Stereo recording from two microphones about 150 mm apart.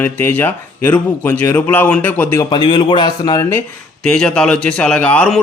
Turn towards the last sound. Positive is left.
turn(degrees=10)  # may be behind; listen again after turning